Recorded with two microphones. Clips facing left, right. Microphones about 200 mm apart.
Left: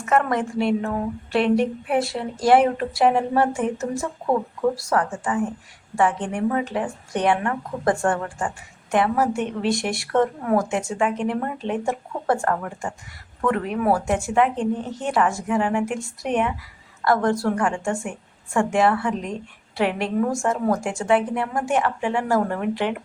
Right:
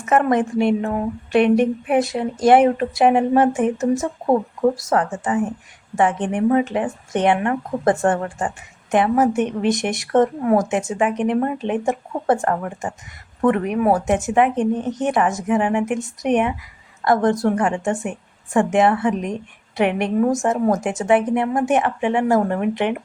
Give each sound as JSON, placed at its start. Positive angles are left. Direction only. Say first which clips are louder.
{"t": 0.0, "sound": "speech", "louder": "right 4 dB", "side_deg": -20}